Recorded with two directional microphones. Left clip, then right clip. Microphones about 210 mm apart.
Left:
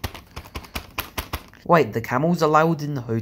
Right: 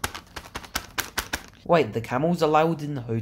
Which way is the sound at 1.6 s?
10° left (ahead or behind).